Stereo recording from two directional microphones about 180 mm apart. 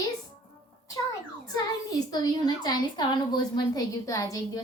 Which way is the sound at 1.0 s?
20° left (ahead or behind).